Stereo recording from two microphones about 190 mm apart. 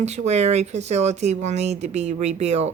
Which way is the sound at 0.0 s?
35° right (ahead or behind).